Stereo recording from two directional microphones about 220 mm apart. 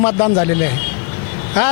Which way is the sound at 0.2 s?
20° left (ahead or behind).